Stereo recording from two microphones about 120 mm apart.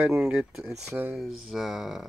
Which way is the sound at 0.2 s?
5° right (ahead or behind).